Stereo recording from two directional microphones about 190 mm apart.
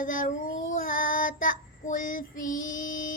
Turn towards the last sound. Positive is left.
turn(degrees=45)  # may be behind; listen again after turning